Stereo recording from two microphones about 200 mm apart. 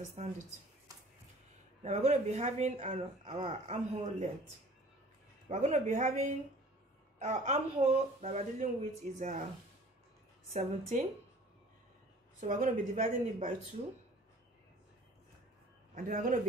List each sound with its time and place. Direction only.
0.2 s speech: 35° right (ahead or behind)
1.8 s speech: 35° right (ahead or behind)
5.5 s speech: 35° right (ahead or behind)
10.5 s speech: 35° right (ahead or behind)
12.4 s speech: 40° right (ahead or behind)
15.9 s a man's voice: 40° right (ahead or behind)